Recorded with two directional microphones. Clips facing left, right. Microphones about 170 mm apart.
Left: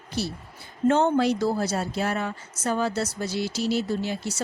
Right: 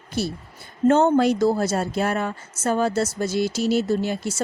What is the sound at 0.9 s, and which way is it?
Speech, 50° right (ahead or behind).